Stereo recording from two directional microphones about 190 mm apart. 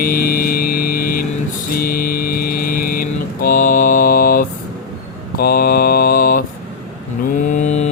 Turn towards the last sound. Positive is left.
turn(degrees=35)  # may be behind; listen again after turning